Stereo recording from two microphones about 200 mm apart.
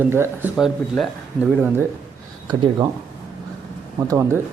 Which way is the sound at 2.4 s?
20° right (ahead or behind).